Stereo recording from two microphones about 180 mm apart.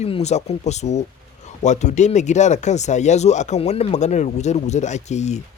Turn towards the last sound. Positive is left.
turn(degrees=40)  # may be behind; listen again after turning